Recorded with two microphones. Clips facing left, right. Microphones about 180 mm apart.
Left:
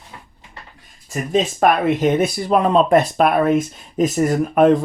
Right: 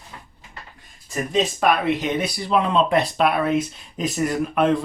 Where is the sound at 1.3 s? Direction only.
45° left (ahead or behind).